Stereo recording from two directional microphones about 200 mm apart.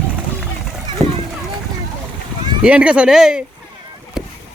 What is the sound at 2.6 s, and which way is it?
Speech, 5° right (ahead or behind).